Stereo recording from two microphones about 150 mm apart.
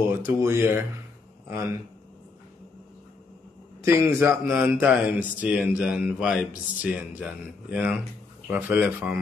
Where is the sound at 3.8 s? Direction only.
15° right (ahead or behind).